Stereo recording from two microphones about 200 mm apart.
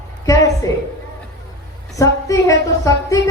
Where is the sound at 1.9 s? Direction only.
15° left (ahead or behind).